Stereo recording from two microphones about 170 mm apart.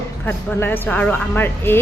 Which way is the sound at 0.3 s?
10° left (ahead or behind).